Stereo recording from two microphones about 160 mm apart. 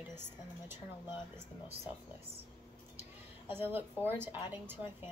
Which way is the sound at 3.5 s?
15° right (ahead or behind).